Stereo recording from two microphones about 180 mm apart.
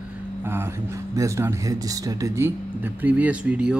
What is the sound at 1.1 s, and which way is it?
Speech, 15° right (ahead or behind).